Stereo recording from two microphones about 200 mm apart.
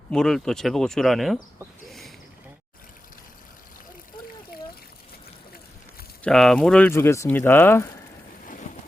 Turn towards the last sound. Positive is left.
turn(degrees=10)  # may be behind; listen again after turning